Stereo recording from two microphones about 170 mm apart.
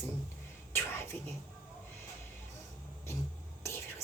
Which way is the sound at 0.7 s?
15° left (ahead or behind).